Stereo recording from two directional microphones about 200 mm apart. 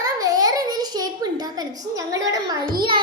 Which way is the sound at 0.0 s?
20° right (ahead or behind).